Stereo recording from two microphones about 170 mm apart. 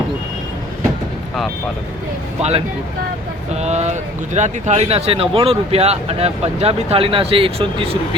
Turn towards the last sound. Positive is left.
turn(degrees=-35)  # may be behind; listen again after turning